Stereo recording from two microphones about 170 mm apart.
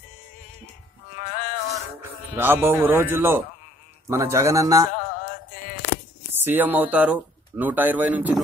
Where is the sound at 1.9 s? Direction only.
15° right (ahead or behind).